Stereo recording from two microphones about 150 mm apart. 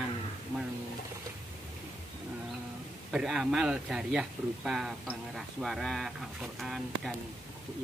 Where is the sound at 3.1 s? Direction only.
5° right (ahead or behind).